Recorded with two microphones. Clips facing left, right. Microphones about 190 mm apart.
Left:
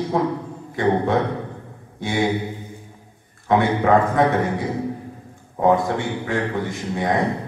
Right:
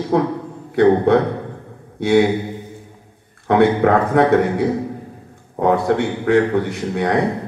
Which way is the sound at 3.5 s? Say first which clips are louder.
Right 3 dB; 65° right (ahead or behind).